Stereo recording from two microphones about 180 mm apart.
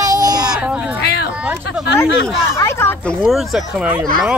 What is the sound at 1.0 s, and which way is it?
Speech, 65° left (ahead or behind).